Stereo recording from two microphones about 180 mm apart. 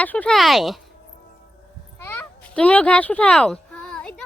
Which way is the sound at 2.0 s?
10° left (ahead or behind).